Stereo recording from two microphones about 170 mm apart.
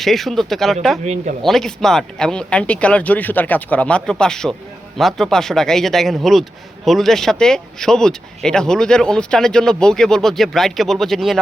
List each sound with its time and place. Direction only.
0.0 s speech: centre (ahead or behind)
1.0 s speech: 45° right (ahead or behind)
1.5 s speech: centre (ahead or behind)